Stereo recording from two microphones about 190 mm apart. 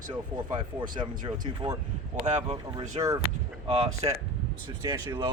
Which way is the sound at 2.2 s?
40° right (ahead or behind).